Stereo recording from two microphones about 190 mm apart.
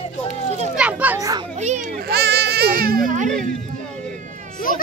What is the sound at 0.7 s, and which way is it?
Speech, 5° right (ahead or behind).